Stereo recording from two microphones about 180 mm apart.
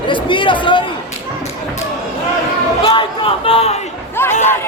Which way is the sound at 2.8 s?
30° left (ahead or behind).